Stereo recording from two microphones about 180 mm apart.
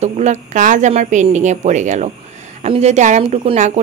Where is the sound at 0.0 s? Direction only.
40° right (ahead or behind).